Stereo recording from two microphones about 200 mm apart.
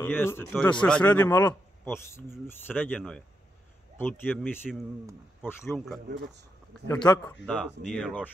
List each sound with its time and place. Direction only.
0.0 s speech: 10° left (ahead or behind)
6.0 s speech: 55° right (ahead or behind)
7.4 s speech: 5° left (ahead or behind)